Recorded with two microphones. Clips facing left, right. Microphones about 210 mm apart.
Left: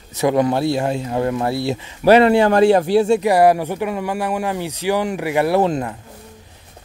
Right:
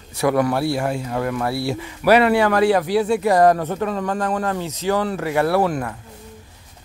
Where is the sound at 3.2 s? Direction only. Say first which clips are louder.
Left 1 dB; 15° left (ahead or behind).